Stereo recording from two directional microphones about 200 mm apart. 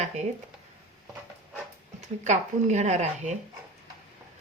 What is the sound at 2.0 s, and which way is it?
Speech, 35° right (ahead or behind).